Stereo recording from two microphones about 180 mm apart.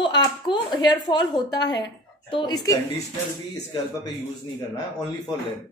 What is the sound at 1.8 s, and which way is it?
Speech, 25° left (ahead or behind).